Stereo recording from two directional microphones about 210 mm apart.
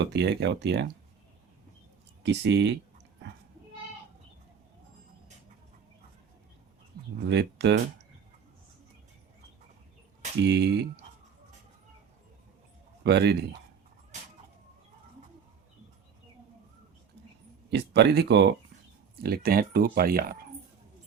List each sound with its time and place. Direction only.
0.0 s speech: 55° right (ahead or behind)
2.2 s speech: 55° right (ahead or behind)
7.3 s speech: 55° right (ahead or behind)
10.4 s speech: 50° right (ahead or behind)
13.1 s speech: 55° right (ahead or behind)
17.7 s speech: 55° right (ahead or behind)